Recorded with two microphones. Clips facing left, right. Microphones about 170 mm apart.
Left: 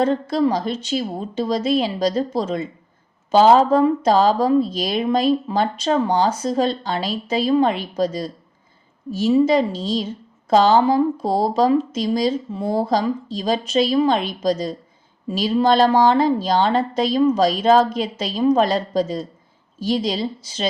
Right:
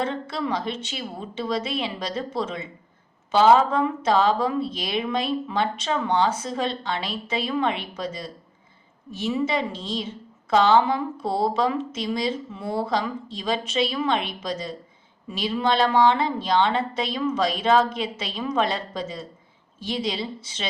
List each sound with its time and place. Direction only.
0.0 s speech: 40° left (ahead or behind)